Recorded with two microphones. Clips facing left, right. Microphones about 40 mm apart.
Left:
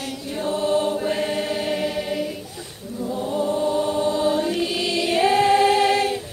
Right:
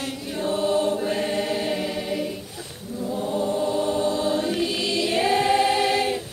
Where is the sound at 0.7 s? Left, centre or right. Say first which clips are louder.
Left 1 dB; centre.